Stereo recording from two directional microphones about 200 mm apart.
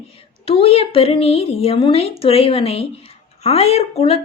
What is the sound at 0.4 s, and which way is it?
A woman's voice, 30° left (ahead or behind).